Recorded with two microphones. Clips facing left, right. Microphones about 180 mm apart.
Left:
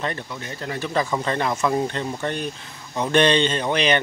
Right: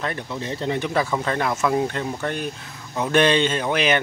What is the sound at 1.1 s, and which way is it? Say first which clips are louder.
Speech: even; centre (ahead or behind).